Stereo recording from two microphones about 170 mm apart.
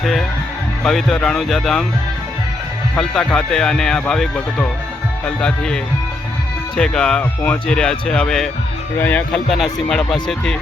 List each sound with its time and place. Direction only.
0.0 s speech: centre (ahead or behind)
3.0 s speech: 5° left (ahead or behind)